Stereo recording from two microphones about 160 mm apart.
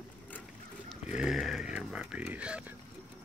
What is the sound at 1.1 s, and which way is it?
Speech, 5° right (ahead or behind).